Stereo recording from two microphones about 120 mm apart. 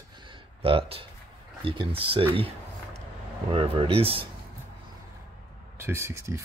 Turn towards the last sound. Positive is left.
turn(degrees=-20)  # may be behind; listen again after turning